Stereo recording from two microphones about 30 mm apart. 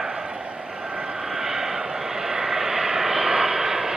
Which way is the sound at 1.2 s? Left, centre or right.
Centre.